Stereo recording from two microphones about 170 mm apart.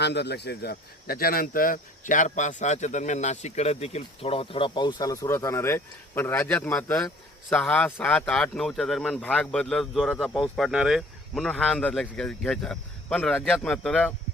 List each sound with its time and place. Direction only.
0.0 s speech: 85° left; by 14.1 s 5° left (ahead or behind)